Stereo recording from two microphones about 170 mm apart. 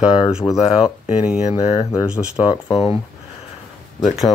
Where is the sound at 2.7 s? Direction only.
35° left (ahead or behind).